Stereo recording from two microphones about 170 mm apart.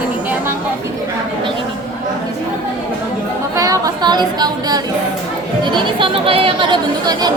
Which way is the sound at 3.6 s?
20° right (ahead or behind).